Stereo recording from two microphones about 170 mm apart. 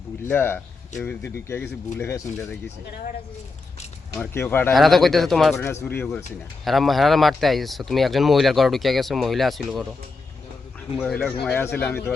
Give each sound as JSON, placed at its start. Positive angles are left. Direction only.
{"t": 0.3, "sound": "speech", "side_deg": 15}
{"t": 4.2, "sound": "speech", "side_deg": 15}
{"t": 4.7, "sound": "speech", "side_deg": 0}
{"t": 5.6, "sound": "speech", "side_deg": 15}
{"t": 6.7, "sound": "speech", "side_deg": 0}
{"t": 10.9, "sound": "speech", "side_deg": 5}